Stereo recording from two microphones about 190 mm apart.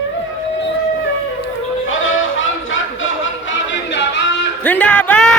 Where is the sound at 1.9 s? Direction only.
90° left; by 4.2 s 70° left (ahead or behind).